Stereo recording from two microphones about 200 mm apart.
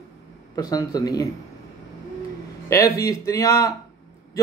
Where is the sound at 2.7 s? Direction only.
15° left (ahead or behind).